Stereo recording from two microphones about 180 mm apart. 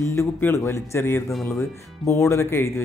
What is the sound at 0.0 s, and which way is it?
Speech, 15° left (ahead or behind).